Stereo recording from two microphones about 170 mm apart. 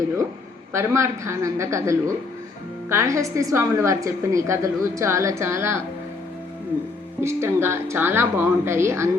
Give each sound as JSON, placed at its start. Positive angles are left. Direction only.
{"t": 0.7, "sound": "a woman's voice", "side_deg": -15}
{"t": 7.2, "sound": "a woman's voice", "side_deg": -15}